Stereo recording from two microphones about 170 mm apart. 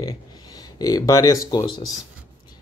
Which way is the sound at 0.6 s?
20° left (ahead or behind).